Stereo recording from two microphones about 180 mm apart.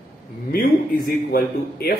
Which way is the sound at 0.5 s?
55° left (ahead or behind).